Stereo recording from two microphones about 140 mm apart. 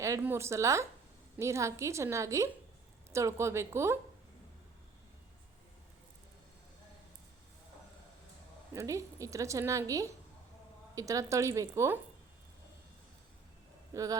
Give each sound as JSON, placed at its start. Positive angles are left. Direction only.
{"t": 0.0, "sound": "a woman's voice", "side_deg": -20}
{"t": 8.7, "sound": "a woman's voice", "side_deg": -20}
{"t": 13.9, "sound": "speech", "side_deg": -25}